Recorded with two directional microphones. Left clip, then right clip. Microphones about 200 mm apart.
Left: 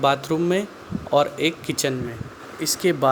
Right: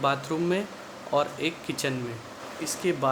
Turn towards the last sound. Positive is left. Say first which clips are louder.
# left 7 dB
turn(degrees=25)  # may be behind; listen again after turning